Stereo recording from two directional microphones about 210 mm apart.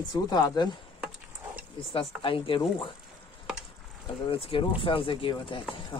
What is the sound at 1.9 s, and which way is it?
Speech, 25° left (ahead or behind).